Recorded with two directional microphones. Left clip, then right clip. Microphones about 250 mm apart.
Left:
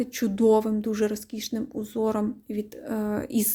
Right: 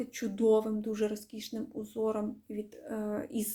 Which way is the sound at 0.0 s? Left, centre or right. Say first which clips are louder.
Left 7 dB; left.